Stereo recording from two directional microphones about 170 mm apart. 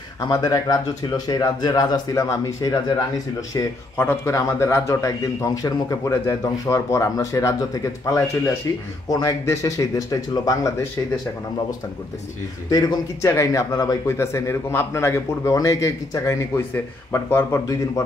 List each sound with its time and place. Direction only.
0.3 s speech: 20° left (ahead or behind)
12.6 s speech: 20° left (ahead or behind)